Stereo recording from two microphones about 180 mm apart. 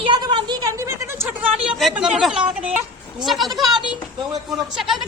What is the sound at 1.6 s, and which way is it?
A woman's voice, 5° right (ahead or behind).